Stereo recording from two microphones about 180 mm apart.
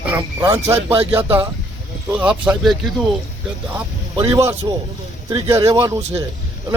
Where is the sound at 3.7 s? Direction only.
15° right (ahead or behind).